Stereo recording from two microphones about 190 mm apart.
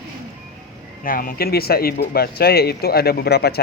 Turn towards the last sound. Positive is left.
turn(degrees=55)  # may be behind; listen again after turning